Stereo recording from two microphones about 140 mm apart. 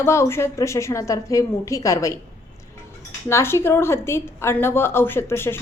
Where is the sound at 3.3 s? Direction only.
15° left (ahead or behind).